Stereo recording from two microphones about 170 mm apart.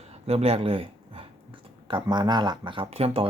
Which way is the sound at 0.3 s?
35° right (ahead or behind).